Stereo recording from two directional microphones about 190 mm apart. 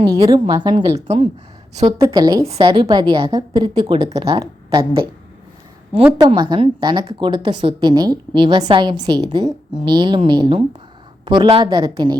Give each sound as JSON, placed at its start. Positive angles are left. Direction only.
{"t": 0.0, "sound": "a woman's voice", "side_deg": -20}
{"t": 6.1, "sound": "a woman's voice", "side_deg": -20}